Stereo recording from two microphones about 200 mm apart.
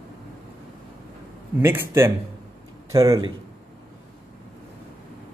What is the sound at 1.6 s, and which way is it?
Speech, 10° right (ahead or behind).